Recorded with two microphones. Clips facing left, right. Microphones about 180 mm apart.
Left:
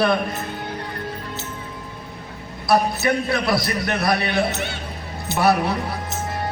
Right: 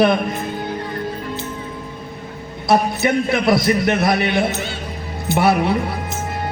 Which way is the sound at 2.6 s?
20° right (ahead or behind).